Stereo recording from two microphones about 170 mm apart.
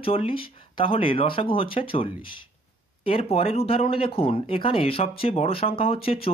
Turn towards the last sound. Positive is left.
turn(degrees=35)  # may be behind; listen again after turning